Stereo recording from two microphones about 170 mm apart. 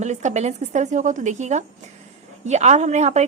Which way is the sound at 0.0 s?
45° right (ahead or behind).